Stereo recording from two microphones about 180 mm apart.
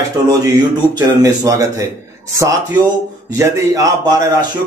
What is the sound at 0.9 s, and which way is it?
Speech, 20° right (ahead or behind).